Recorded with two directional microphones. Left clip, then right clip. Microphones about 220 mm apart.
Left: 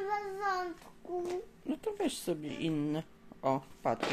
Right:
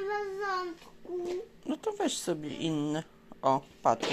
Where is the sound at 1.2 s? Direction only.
5° left (ahead or behind).